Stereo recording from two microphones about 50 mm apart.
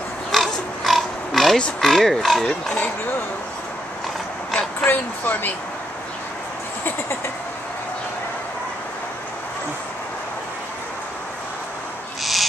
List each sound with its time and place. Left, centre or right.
0.3 s pig: centre
1.8 s speech: centre
4.8 s speech: left
12.2 s owl: centre